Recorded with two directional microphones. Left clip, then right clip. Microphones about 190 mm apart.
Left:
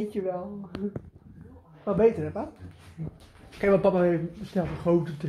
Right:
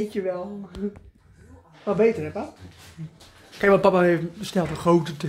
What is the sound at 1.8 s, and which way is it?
Speech, 5° right (ahead or behind).